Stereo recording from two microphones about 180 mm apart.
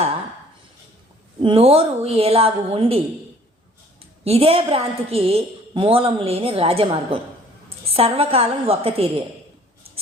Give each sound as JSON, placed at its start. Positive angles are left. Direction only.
{"t": 1.4, "sound": "a woman's voice", "side_deg": -30}
{"t": 4.2, "sound": "a woman's voice", "side_deg": -35}